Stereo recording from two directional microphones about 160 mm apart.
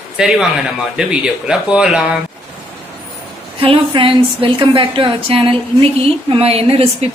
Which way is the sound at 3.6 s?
35° right (ahead or behind).